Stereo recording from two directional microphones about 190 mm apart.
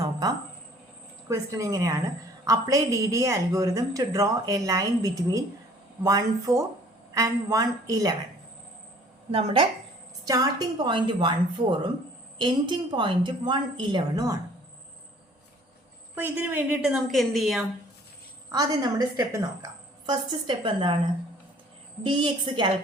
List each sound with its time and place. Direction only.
0.0 s a sound: 20° right (ahead or behind)
1.3 s speech: 15° right (ahead or behind)
9.3 s a woman's voice: 30° right (ahead or behind)
16.1 s a woman's voice: 10° right (ahead or behind)
18.5 s a woman's voice: 20° right (ahead or behind)
22.0 s a woman's voice: 25° right (ahead or behind)